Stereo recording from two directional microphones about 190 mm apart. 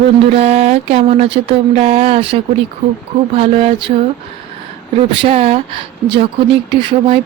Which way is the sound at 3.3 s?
30° right (ahead or behind).